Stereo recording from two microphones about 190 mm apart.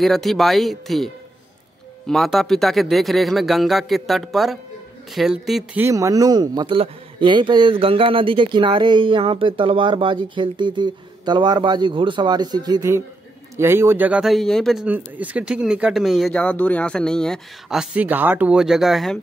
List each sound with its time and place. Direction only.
0.0 s speech: centre (ahead or behind)
5.9 s speech: 15° right (ahead or behind); by 19.1 s centre (ahead or behind)